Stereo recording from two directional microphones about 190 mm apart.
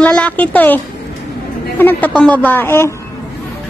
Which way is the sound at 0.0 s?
5° left (ahead or behind).